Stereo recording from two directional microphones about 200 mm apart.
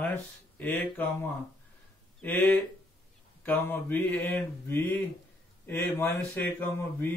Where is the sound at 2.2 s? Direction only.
10° left (ahead or behind).